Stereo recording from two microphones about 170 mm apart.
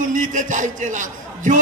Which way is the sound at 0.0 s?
50° right (ahead or behind).